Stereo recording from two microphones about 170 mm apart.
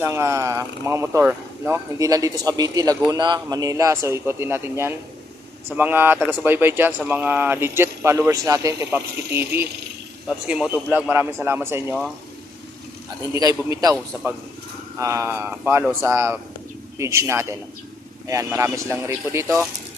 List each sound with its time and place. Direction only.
0.0 s speech: 15° right (ahead or behind)
13.3 s a man's voice: 20° right (ahead or behind)
14.9 s speech: 15° right (ahead or behind)